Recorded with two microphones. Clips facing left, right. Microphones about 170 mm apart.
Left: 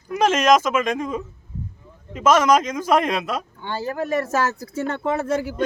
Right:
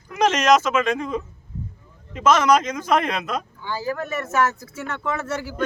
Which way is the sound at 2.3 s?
10° left (ahead or behind).